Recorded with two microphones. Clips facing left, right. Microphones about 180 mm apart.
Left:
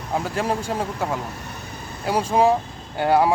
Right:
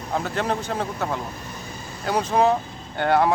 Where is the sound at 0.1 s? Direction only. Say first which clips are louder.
Left 1 dB; 10° left (ahead or behind).